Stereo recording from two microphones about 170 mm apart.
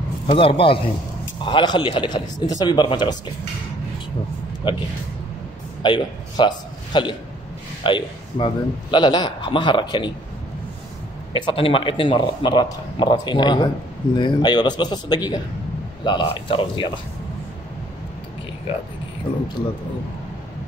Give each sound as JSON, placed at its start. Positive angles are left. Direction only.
{"t": 0.3, "sound": "a man's voice", "side_deg": 30}
{"t": 4.6, "sound": "a man's voice", "side_deg": 30}
{"t": 11.3, "sound": "a man's voice", "side_deg": 30}